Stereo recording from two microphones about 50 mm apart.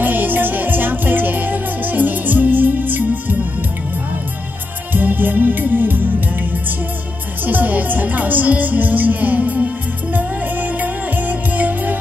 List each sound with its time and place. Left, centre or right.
0.0 s music: right
4.9 s music: right